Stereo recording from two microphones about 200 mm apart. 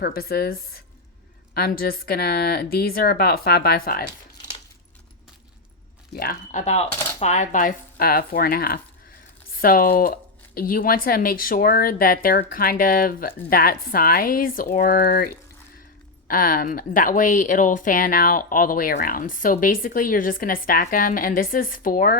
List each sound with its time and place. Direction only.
0.0 s a woman's voice: 50° left (ahead or behind)
1.5 s a woman's voice: 50° left (ahead or behind)
6.1 s a woman's voice: 45° left (ahead or behind)